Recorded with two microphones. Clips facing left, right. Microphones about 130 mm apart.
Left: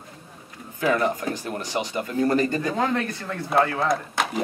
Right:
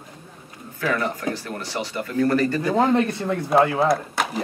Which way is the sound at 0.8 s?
20° left (ahead or behind).